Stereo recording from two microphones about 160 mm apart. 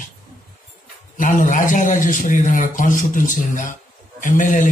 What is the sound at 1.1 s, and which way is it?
A man's voice, 55° left (ahead or behind).